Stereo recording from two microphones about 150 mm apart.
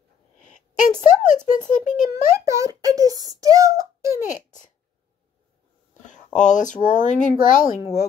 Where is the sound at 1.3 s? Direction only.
60° left (ahead or behind).